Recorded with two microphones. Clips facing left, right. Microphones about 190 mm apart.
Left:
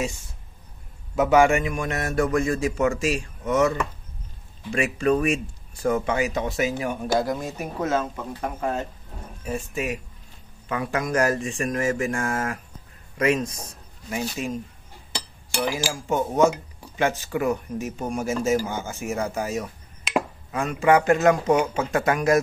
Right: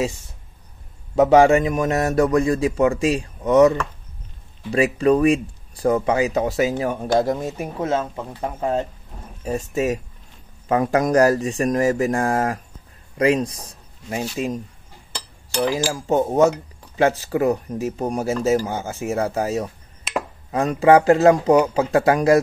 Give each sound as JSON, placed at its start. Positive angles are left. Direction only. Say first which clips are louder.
{"t": 1.1, "sound": "speech", "louder": "right 5 dB", "side_deg": -35}
{"t": 9.4, "sound": "speech", "louder": "right 6 dB", "side_deg": -40}
{"t": 15.9, "sound": "speech", "louder": "right 5 dB", "side_deg": -35}
{"t": 20.1, "sound": "a sound", "louder": "left 2 dB", "side_deg": 0}
{"t": 20.5, "sound": "speech", "louder": "right 5 dB", "side_deg": -35}